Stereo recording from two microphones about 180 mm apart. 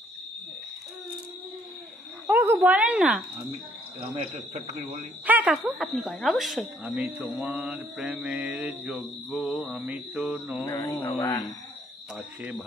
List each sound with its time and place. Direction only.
2.2 s speech: 10° right (ahead or behind)
4.0 s speech: 30° right (ahead or behind)
4.6 s speech: 40° right (ahead or behind)
5.2 s mantra: 10° right (ahead or behind)
10.6 s speech: 15° left (ahead or behind)
12.2 s speech: 10° right (ahead or behind)